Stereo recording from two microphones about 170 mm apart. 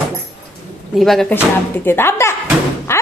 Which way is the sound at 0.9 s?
Centre (ahead or behind).